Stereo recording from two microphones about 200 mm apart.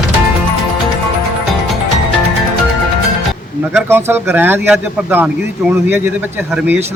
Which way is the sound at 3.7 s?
10° right (ahead or behind).